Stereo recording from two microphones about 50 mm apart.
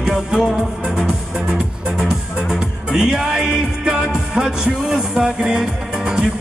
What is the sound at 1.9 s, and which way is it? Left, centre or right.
Music, centre.